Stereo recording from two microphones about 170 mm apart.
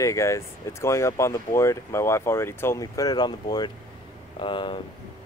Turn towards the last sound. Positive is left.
turn(degrees=30)  # may be behind; listen again after turning